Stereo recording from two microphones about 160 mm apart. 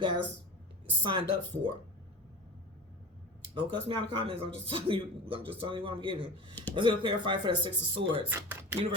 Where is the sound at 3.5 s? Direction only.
35° right (ahead or behind).